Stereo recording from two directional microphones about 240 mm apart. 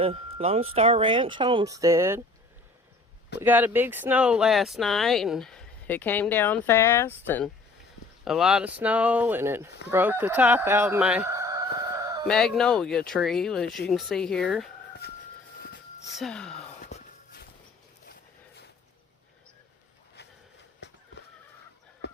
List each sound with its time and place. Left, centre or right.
0.0 s speech: right
3.4 s speech: centre
12.3 s speech: centre
16.1 s speech: centre
16.8 s walk: left